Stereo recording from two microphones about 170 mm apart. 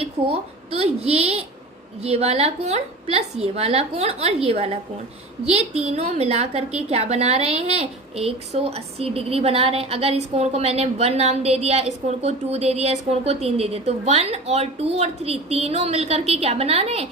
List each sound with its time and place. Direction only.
0.0 s a woman's voice: 35° right (ahead or behind)